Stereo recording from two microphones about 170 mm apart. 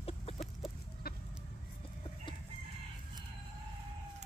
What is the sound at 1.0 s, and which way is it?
Chicken, 65° left (ahead or behind).